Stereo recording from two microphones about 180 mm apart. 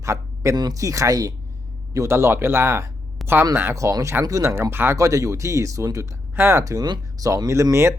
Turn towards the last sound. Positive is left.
turn(degrees=-15)  # may be behind; listen again after turning